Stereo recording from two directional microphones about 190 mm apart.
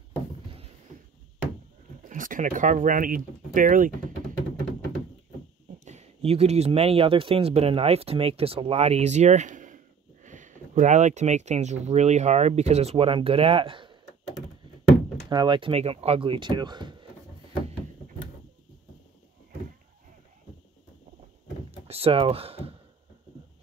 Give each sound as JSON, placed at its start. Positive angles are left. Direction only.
{"t": 2.0, "sound": "speech", "side_deg": -45}
{"t": 5.9, "sound": "speech", "side_deg": -35}
{"t": 15.2, "sound": "speech", "side_deg": -25}
{"t": 21.6, "sound": "computer keyboard", "side_deg": -30}